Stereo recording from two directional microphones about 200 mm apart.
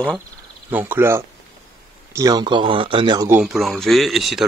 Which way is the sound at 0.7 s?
10° right (ahead or behind).